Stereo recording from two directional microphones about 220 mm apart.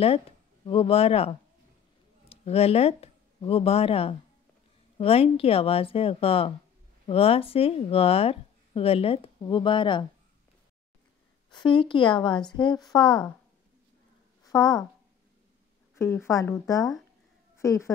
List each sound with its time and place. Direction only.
0.7 s speech: 25° left (ahead or behind)
11.5 s speech: 20° left (ahead or behind)
14.5 s speech: 15° left (ahead or behind)
15.9 s a woman's voice: 10° left (ahead or behind)